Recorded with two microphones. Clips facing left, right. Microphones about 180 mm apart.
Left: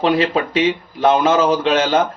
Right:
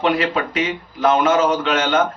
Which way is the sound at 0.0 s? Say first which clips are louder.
Left 3 dB; 30° left (ahead or behind).